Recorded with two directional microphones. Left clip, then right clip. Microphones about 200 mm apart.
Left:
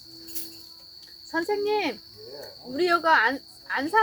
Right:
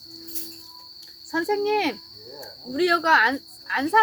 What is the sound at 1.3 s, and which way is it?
Speech, 30° right (ahead or behind).